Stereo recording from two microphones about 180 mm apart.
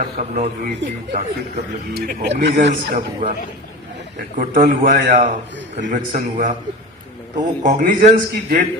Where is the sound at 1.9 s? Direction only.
55° right (ahead or behind).